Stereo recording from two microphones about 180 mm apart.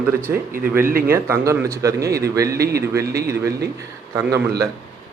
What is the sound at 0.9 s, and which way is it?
Speech, 55° right (ahead or behind).